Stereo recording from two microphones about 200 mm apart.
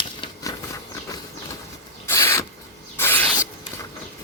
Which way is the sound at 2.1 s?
15° left (ahead or behind).